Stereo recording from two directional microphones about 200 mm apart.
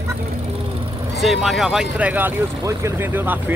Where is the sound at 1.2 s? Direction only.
Centre (ahead or behind).